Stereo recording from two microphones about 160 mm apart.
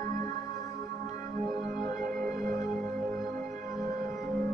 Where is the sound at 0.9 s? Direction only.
55° right (ahead or behind).